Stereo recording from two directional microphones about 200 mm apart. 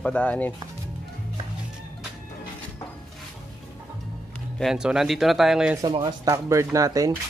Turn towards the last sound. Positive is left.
turn(degrees=-15)  # may be behind; listen again after turning